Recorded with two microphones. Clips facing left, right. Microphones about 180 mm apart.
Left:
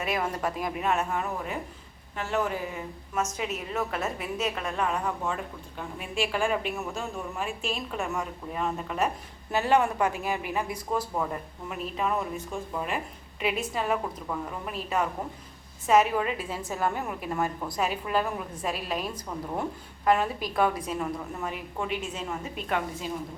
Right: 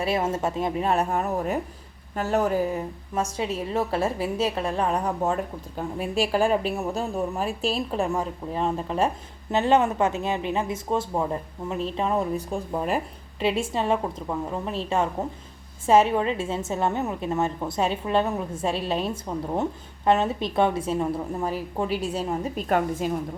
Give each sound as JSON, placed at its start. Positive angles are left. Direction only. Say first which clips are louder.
{"t": 0.0, "sound": "a woman's voice", "louder": "right 5 dB", "side_deg": -25}